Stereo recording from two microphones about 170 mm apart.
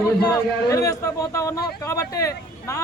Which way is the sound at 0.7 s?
20° left (ahead or behind).